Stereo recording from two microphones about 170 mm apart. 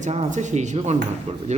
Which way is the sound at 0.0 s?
45° right (ahead or behind).